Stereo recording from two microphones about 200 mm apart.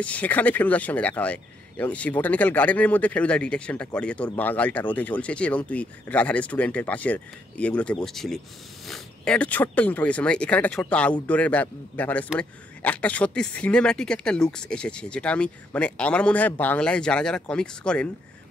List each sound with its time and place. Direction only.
0.0 s speech: 5° left (ahead or behind)